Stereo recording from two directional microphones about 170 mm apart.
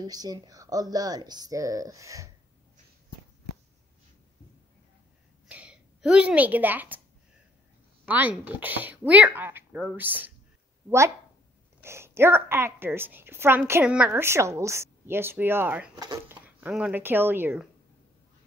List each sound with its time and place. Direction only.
0.0 s speech: 20° right (ahead or behind)
5.5 s a woman's voice: 5° right (ahead or behind)
8.0 s a woman's voice: 10° right (ahead or behind)
11.8 s a woman's voice: 15° right (ahead or behind)